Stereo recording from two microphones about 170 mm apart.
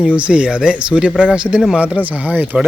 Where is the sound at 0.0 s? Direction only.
5° right (ahead or behind).